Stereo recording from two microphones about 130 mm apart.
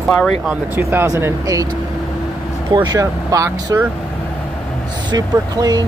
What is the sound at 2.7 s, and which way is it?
Speech, 30° right (ahead or behind).